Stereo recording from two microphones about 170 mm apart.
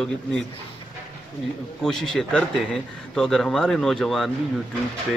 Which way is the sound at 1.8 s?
5° left (ahead or behind).